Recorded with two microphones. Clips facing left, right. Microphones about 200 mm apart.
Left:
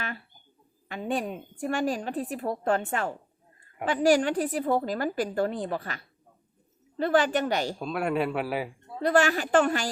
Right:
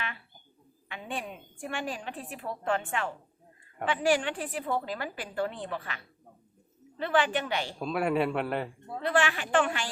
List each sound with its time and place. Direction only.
0.9 s a woman's voice: 40° left (ahead or behind)
7.8 s speech: centre (ahead or behind)
9.0 s a woman's voice: 40° left (ahead or behind)